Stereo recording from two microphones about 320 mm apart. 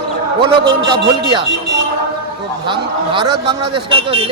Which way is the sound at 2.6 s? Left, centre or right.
Centre.